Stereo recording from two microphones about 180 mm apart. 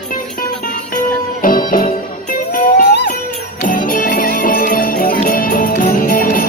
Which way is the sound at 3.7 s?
50° left (ahead or behind).